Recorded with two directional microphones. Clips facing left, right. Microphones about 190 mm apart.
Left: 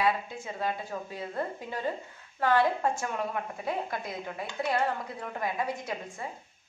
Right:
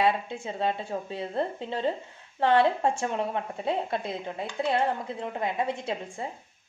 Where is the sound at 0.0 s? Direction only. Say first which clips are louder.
Right 3 dB; 25° right (ahead or behind).